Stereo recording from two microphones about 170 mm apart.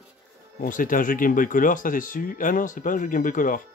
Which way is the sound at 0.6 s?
55° left (ahead or behind).